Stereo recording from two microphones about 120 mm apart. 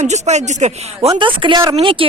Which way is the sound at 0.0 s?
75° right (ahead or behind).